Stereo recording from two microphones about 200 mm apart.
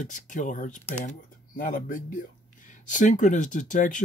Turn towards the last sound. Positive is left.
turn(degrees=40)  # may be behind; listen again after turning